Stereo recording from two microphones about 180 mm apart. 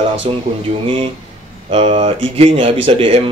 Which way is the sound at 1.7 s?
35° right (ahead or behind).